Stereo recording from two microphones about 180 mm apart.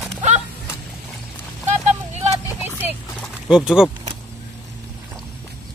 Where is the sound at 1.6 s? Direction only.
40° right (ahead or behind).